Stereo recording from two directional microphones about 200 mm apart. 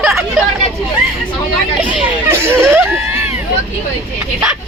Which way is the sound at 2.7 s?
10° right (ahead or behind).